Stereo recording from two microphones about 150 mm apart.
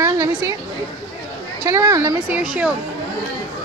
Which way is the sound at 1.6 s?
20° right (ahead or behind).